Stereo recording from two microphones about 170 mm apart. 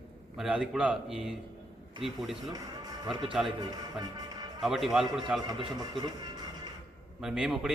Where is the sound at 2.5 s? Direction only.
25° right (ahead or behind).